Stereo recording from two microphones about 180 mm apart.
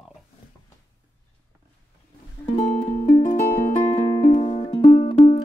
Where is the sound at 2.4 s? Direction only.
35° left (ahead or behind).